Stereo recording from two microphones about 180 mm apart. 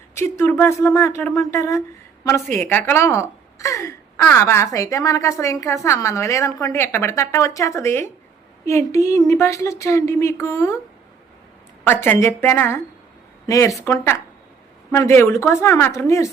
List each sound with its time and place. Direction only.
0.2 s speech: 15° left (ahead or behind)
11.9 s speech: 10° left (ahead or behind)